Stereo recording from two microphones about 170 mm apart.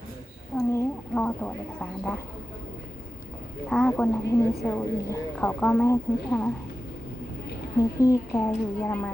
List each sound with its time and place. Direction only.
0.5 s a sound: 15° left (ahead or behind)
3.7 s a woman's voice: 5° left (ahead or behind)
7.8 s a woman's voice: 20° left (ahead or behind)